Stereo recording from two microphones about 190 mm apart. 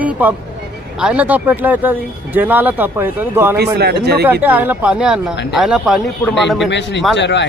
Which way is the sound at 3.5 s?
60° right (ahead or behind).